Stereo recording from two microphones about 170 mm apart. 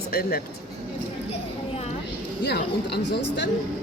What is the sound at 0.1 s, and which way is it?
Speech, 60° left (ahead or behind).